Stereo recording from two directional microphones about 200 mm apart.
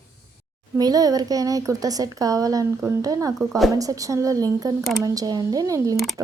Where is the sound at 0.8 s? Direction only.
20° right (ahead or behind).